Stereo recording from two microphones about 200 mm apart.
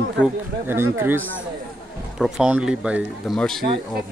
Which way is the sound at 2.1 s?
5° right (ahead or behind).